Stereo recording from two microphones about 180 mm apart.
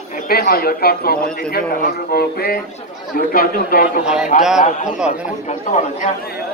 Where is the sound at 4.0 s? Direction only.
5° right (ahead or behind).